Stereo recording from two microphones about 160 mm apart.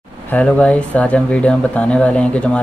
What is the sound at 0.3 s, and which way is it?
Speech, 5° left (ahead or behind).